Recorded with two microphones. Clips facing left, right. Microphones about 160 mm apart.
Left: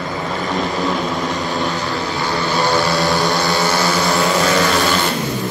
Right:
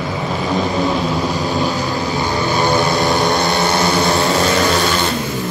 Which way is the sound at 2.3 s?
15° right (ahead or behind).